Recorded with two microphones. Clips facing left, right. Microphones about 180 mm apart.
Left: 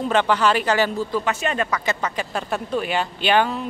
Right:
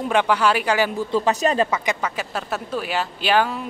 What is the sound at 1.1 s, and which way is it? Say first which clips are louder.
Speech: right 4 dB; 30° right (ahead or behind).